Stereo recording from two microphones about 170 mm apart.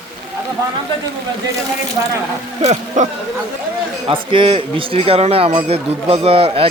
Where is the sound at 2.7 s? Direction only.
45° right (ahead or behind).